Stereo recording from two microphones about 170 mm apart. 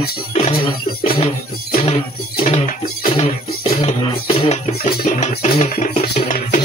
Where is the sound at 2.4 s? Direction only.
45° left (ahead or behind).